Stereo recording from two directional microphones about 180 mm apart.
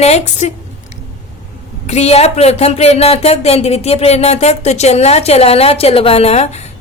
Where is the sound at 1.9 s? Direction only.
35° left (ahead or behind).